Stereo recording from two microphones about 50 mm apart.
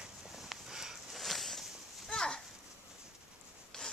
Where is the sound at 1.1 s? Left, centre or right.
Centre.